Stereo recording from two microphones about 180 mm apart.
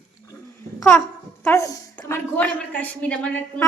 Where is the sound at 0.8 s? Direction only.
10° left (ahead or behind).